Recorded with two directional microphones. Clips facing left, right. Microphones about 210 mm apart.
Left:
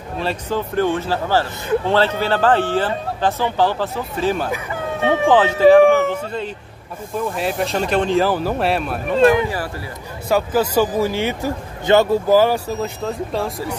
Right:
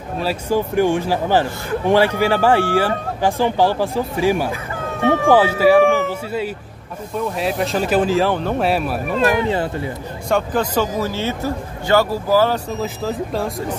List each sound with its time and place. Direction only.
0.2 s a man's voice: 10° right (ahead or behind)
5.0 s speech: 20° left (ahead or behind)
5.3 s a man's voice: 10° right (ahead or behind)
7.2 s speech: centre (ahead or behind)
9.3 s speech: 25° right (ahead or behind)
10.3 s speech: 5° left (ahead or behind)
12.6 s speech: centre (ahead or behind)